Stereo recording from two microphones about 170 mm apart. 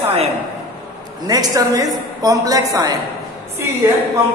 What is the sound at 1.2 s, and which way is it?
A woman's voice, 20° right (ahead or behind).